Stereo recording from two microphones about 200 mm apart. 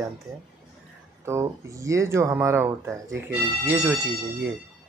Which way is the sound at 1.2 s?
15° right (ahead or behind).